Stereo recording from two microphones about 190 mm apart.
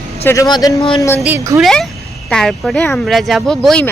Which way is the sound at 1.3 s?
15° right (ahead or behind).